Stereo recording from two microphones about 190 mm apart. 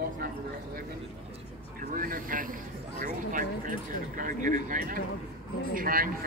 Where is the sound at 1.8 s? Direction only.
45° right (ahead or behind).